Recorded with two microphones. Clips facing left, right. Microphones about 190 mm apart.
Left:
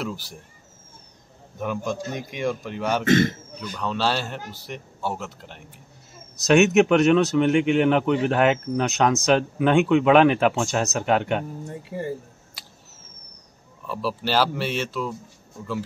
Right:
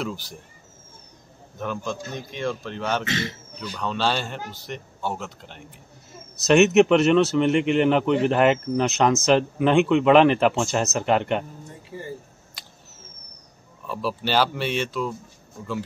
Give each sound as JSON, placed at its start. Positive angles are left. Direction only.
{"t": 0.0, "sound": "a man's voice", "side_deg": 5}
{"t": 1.6, "sound": "a man's voice", "side_deg": 10}
{"t": 3.1, "sound": "a man's voice", "side_deg": 50}
{"t": 3.7, "sound": "speech", "side_deg": 0}
{"t": 12.6, "sound": "a sound", "side_deg": 5}
{"t": 13.8, "sound": "speech", "side_deg": 0}